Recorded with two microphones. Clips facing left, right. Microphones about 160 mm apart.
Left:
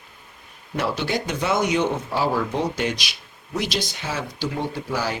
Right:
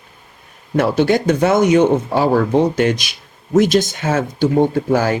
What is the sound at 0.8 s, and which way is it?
Speech, 50° right (ahead or behind).